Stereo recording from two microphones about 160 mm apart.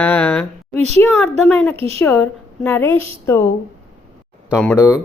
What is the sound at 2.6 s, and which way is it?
Speech, 15° left (ahead or behind).